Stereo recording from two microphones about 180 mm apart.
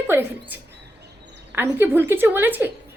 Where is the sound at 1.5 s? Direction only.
10° right (ahead or behind).